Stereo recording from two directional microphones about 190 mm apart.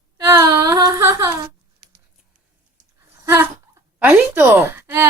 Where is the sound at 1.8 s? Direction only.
50° right (ahead or behind).